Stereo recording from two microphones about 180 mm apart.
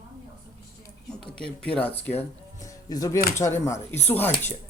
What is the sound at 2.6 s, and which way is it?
Speech, 20° left (ahead or behind).